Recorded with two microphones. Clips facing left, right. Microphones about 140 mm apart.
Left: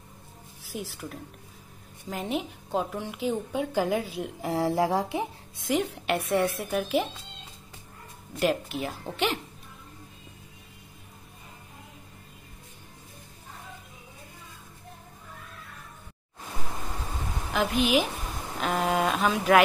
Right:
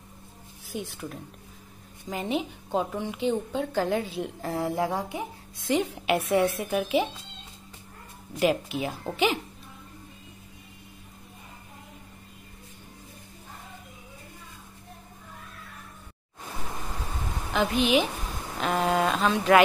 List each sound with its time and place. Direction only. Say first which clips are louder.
0.7 s a woman's voice: right 1 dB; centre (ahead or behind)
4.4 s speech: left 3 dB; 15° left (ahead or behind)
5.7 s a woman's voice: right 2 dB; centre (ahead or behind)
8.4 s a woman's voice: right 2 dB; centre (ahead or behind)
17.5 s a woman's voice: right 1 dB; centre (ahead or behind)